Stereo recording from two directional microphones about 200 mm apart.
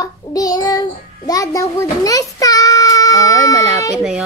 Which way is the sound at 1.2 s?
15° left (ahead or behind).